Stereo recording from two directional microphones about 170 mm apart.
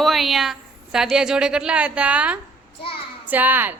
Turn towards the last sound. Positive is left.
turn(degrees=-10)  # may be behind; listen again after turning